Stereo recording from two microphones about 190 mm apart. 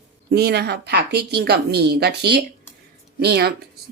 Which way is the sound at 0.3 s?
55° right (ahead or behind).